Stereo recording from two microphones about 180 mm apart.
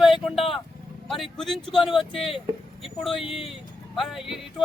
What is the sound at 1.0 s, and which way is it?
Speech, centre (ahead or behind).